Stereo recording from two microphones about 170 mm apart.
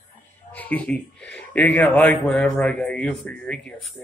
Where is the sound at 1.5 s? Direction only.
10° left (ahead or behind).